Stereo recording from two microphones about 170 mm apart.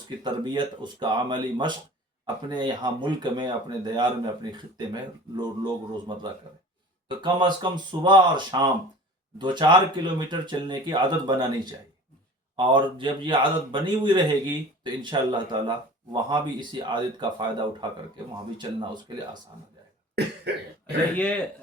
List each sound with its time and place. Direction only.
0.2 s speech: 25° right (ahead or behind)
20.1 s cough: 80° right
21.2 s a man's voice: 5° left (ahead or behind)